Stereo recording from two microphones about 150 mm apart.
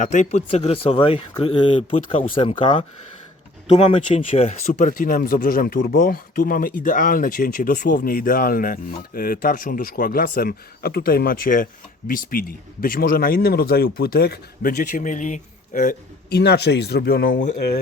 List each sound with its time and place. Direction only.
0.0 s speech: 50° left (ahead or behind)
4.2 s speech: 55° left (ahead or behind)
4.7 s speech: 65° left (ahead or behind); by 17.7 s 80° left